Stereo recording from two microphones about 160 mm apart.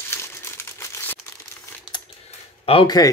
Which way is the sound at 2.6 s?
35° left (ahead or behind).